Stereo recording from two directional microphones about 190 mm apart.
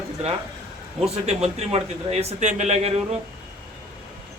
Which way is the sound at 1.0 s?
35° right (ahead or behind).